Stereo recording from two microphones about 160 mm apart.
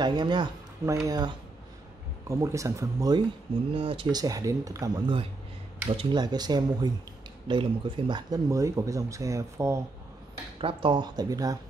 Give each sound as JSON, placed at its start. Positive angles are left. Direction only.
{"t": 0.0, "sound": "speech", "side_deg": -30}
{"t": 3.7, "sound": "speech", "side_deg": -35}
{"t": 10.6, "sound": "speech", "side_deg": -30}